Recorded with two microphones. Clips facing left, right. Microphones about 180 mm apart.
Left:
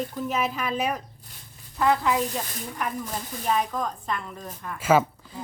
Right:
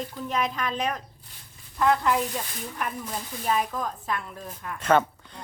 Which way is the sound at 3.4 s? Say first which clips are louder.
Left 1 dB; centre (ahead or behind).